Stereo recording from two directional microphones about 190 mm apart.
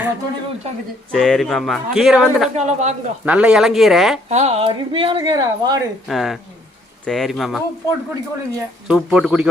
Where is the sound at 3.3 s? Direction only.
5° right (ahead or behind).